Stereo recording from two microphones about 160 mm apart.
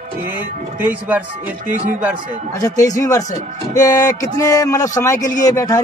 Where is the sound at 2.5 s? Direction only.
20° left (ahead or behind).